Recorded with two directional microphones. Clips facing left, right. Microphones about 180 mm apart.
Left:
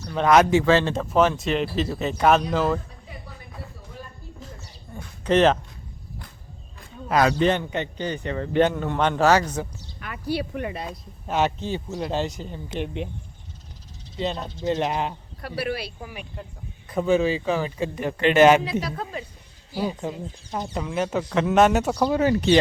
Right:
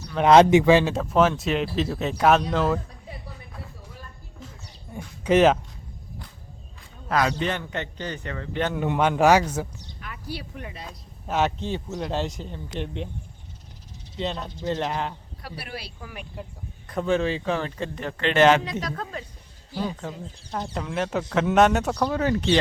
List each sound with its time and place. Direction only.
0.3 s speech: 30° right (ahead or behind)
0.6 s speech: 15° right (ahead or behind)
0.9 s speech: centre (ahead or behind)
4.9 s speech: 10° right (ahead or behind)
7.3 s speech: 30° left (ahead or behind)
7.6 s speech: 15° left (ahead or behind)
8.4 s speech: 35° left (ahead or behind)
8.7 s speech: 10° right (ahead or behind)
10.0 s speech: 65° left (ahead or behind)
10.8 s speech: centre (ahead or behind)
12.8 s speech: 10° left (ahead or behind)
14.6 s speech: 15° left (ahead or behind)
15.4 s speech: 75° left (ahead or behind)
16.1 s speech: 5° right (ahead or behind)